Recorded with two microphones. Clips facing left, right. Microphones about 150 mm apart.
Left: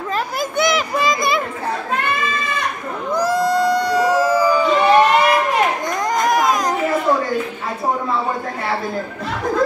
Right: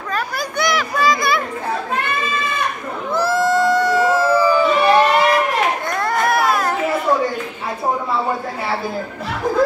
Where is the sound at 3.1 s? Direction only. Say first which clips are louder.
Even; 15° left (ahead or behind).